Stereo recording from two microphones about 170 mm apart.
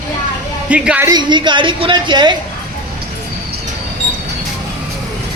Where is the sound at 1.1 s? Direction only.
25° right (ahead or behind).